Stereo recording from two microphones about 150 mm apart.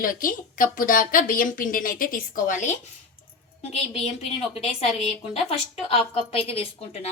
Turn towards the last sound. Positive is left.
turn(degrees=45)  # may be behind; listen again after turning